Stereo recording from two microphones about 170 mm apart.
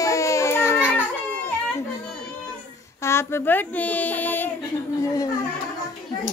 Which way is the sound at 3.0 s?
15° left (ahead or behind).